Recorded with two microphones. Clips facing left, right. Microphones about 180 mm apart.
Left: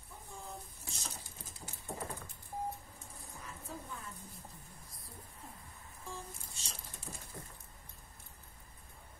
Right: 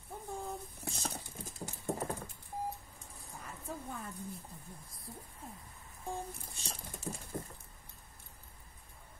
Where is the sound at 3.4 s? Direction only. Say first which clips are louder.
Right 4 dB; 60° right (ahead or behind).